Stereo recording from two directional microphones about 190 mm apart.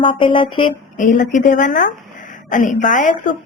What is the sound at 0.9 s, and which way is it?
Mantra, 40° left (ahead or behind).